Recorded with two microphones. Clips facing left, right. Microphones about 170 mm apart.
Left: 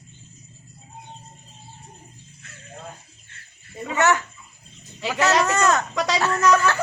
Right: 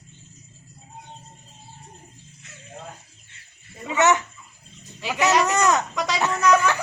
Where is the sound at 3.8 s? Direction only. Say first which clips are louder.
Right 1 dB; 20° right (ahead or behind).